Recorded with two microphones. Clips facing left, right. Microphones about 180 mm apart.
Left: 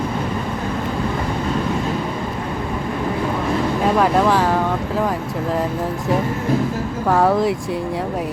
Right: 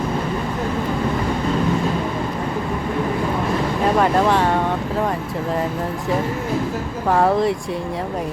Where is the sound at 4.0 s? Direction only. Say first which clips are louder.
Even; centre (ahead or behind).